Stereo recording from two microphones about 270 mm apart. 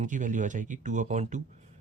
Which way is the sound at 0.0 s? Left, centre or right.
Right.